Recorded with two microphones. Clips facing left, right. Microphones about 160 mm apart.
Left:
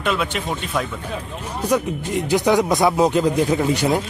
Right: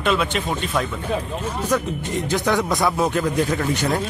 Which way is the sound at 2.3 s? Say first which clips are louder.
Left 4 dB; 20° left (ahead or behind).